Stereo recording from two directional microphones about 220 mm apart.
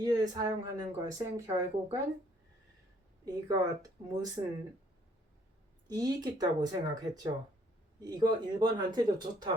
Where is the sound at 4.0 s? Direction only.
15° right (ahead or behind).